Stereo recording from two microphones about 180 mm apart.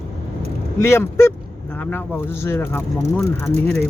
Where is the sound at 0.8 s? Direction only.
15° left (ahead or behind).